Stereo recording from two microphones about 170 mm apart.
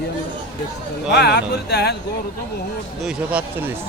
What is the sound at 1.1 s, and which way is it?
Speech, 85° left.